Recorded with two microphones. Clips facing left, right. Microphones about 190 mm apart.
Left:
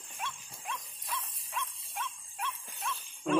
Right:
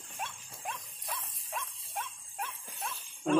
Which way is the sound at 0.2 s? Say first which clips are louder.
Right 1 dB; 45° right (ahead or behind).